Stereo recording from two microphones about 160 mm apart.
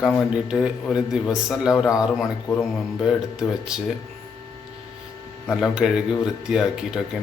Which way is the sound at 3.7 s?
5° right (ahead or behind).